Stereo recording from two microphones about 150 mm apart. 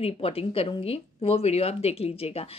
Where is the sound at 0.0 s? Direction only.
40° left (ahead or behind).